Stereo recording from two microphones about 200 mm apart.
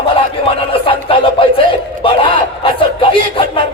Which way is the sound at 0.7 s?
25° left (ahead or behind).